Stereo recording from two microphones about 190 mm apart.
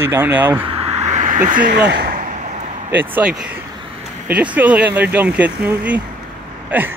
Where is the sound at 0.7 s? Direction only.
30° right (ahead or behind); by 2.2 s 55° right (ahead or behind).